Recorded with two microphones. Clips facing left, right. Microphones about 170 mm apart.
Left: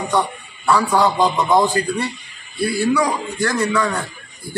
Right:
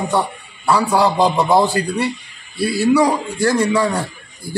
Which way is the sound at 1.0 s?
30° right (ahead or behind).